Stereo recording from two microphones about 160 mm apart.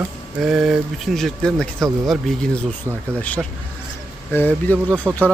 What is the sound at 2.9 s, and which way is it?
Speech, 20° right (ahead or behind).